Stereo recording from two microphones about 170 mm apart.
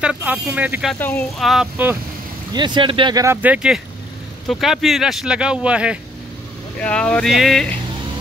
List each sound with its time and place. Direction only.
0.0 s speech: 5° right (ahead or behind)
0.9 s speech: 10° left (ahead or behind)
1.4 s speech: 5° right (ahead or behind)
2.5 s speech: 25° right (ahead or behind)
3.4 s speech: 5° right (ahead or behind)
6.8 s speech: 5° left (ahead or behind)